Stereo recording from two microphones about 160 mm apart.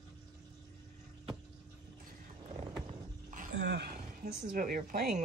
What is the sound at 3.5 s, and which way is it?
Speech, 90° right.